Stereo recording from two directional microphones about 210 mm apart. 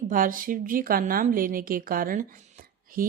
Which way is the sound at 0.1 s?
40° right (ahead or behind).